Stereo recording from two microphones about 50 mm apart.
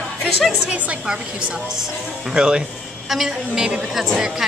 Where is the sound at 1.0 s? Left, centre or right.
Centre.